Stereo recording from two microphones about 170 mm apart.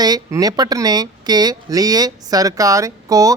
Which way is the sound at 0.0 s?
20° right (ahead or behind).